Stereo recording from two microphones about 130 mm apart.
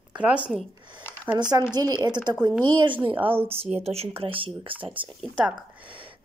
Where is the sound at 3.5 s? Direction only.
50° right (ahead or behind).